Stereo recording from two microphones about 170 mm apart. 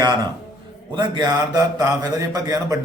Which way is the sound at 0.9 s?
25° right (ahead or behind).